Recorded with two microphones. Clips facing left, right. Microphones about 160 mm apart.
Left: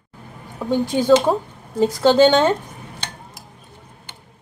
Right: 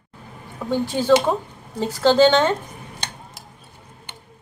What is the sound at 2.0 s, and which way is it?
Speech, 15° left (ahead or behind).